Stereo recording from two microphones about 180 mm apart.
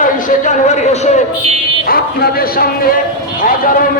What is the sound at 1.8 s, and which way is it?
Speech, 55° left (ahead or behind).